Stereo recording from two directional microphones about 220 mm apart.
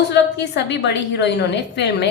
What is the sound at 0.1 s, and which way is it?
A woman's voice, 50° left (ahead or behind).